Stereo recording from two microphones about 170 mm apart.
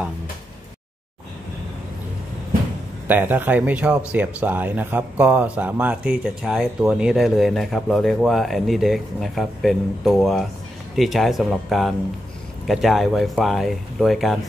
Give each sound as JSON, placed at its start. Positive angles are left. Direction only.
{"t": 3.1, "sound": "speech", "side_deg": -10}